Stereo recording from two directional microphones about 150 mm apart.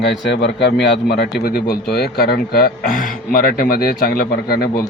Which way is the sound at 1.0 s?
90° left.